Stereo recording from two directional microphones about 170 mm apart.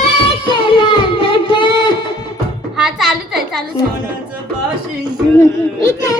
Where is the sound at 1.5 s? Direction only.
25° left (ahead or behind).